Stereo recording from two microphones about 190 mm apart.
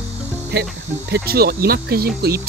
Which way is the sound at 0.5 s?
60° right (ahead or behind).